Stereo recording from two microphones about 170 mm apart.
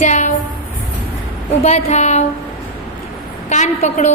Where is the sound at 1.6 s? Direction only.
40° left (ahead or behind).